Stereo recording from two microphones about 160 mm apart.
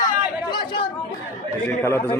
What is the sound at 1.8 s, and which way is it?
Speech, 15° left (ahead or behind).